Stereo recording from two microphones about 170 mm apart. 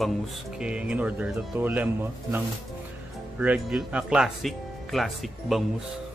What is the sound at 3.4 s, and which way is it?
Speech, 5° right (ahead or behind).